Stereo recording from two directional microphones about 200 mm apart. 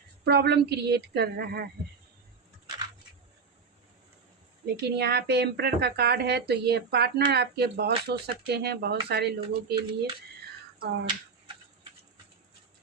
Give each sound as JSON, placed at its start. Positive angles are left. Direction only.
{"t": 0.3, "sound": "a woman's voice", "side_deg": -55}
{"t": 4.6, "sound": "a woman's voice", "side_deg": -55}
{"t": 10.8, "sound": "speech", "side_deg": -60}